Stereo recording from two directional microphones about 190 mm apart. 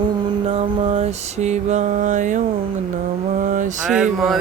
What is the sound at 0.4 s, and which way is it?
Mantra, 30° right (ahead or behind).